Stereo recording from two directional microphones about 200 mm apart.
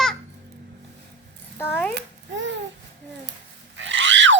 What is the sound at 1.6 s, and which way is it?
Speech, 10° left (ahead or behind).